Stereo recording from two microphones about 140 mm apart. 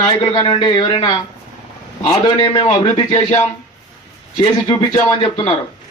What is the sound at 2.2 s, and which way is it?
Speech, 30° left (ahead or behind).